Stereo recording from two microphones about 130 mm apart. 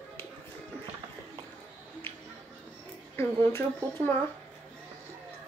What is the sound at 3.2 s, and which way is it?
Speech, 20° left (ahead or behind).